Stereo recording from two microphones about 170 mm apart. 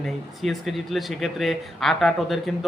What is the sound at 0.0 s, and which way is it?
Speech, centre (ahead or behind).